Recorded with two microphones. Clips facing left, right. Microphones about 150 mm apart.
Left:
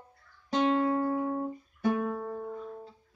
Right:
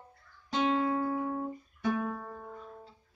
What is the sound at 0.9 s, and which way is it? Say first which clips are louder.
Music: left 3 dB; 40° left (ahead or behind).